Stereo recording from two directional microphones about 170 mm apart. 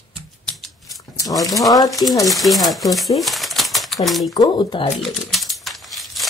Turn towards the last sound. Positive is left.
turn(degrees=0)  # may be behind; listen again after turning